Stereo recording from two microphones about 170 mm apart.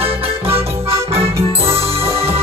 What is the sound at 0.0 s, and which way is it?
Music, 35° right (ahead or behind).